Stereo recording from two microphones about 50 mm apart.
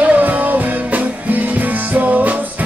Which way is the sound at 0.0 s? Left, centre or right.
Right.